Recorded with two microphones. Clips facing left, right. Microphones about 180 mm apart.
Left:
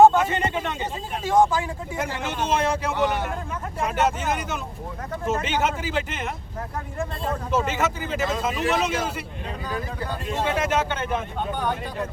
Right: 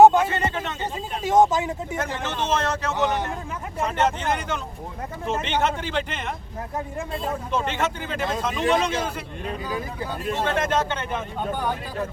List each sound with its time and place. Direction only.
0.3 s a man's voice: 15° left (ahead or behind)
1.2 s speech: 20° right (ahead or behind)
2.1 s speech: 10° left (ahead or behind)
7.5 s speech: 5° left (ahead or behind)
9.6 s speech: 10° right (ahead or behind)
10.4 s speech: 10° left (ahead or behind)